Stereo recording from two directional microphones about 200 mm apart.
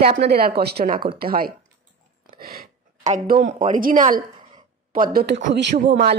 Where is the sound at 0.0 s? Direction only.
50° right (ahead or behind).